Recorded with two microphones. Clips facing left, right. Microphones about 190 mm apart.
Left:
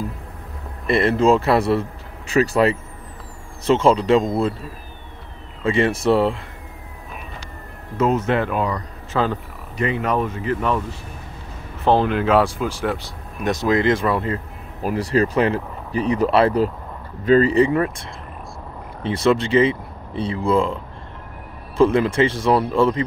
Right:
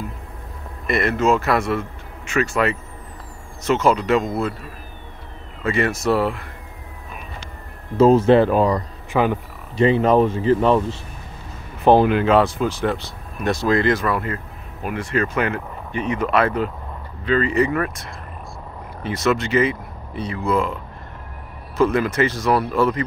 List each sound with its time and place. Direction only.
0.8 s speech: 30° left (ahead or behind)
5.6 s speech: 25° left (ahead or behind)
8.0 s speech: 30° right (ahead or behind)
9.1 s speech: 15° right (ahead or behind)
9.8 s speech: 30° right (ahead or behind)
11.8 s speech: 15° right (ahead or behind)
12.1 s speech: centre (ahead or behind); by 17.9 s 25° left (ahead or behind)
19.0 s speech: 30° left (ahead or behind)